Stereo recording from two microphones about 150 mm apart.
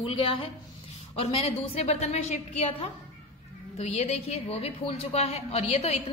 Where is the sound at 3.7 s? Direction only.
45° left (ahead or behind).